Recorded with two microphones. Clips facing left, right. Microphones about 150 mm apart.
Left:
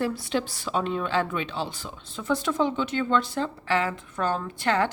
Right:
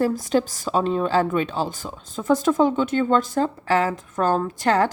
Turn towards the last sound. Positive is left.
turn(degrees=-40)  # may be behind; listen again after turning